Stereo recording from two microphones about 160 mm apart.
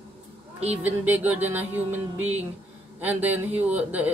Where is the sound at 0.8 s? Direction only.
10° right (ahead or behind).